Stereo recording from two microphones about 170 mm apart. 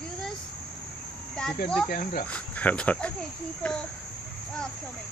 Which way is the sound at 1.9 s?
60° left (ahead or behind).